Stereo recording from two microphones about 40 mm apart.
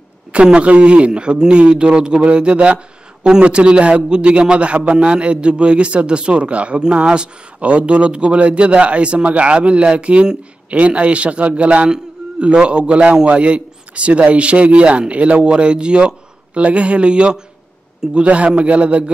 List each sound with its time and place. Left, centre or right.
0.3 s a man's voice: right
18.2 s a man's voice: right